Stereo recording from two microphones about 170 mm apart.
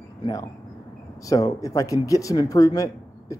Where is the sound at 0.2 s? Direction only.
20° left (ahead or behind).